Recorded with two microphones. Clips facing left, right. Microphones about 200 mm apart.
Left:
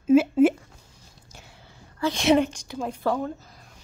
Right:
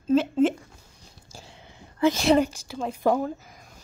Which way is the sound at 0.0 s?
10° left (ahead or behind).